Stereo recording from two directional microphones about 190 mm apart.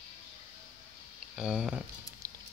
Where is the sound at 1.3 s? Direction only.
5° right (ahead or behind).